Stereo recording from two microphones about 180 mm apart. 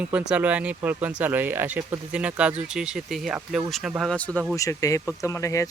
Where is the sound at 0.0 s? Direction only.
5° right (ahead or behind).